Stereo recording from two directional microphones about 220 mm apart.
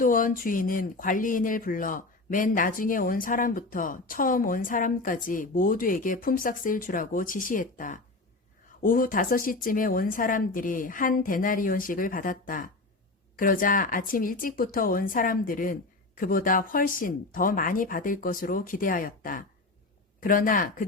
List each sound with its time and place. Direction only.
0.0 s speech: 40° left (ahead or behind)